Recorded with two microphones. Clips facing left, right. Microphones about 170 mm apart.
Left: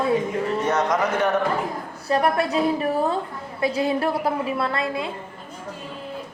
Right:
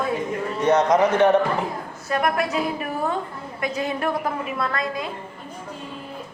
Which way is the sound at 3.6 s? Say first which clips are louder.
Left 4 dB; 30° left (ahead or behind).